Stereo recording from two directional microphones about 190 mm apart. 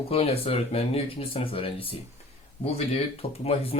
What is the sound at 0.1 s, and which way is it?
Speech, 30° left (ahead or behind).